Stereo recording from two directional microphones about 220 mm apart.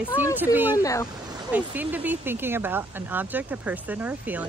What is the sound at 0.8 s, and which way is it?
Speech, 15° left (ahead or behind).